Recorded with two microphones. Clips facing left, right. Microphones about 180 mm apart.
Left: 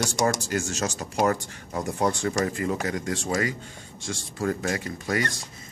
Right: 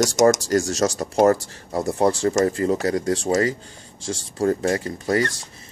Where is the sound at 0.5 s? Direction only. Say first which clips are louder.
Right 8 dB; 35° right (ahead or behind).